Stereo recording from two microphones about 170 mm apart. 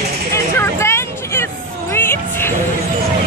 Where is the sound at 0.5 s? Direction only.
15° left (ahead or behind).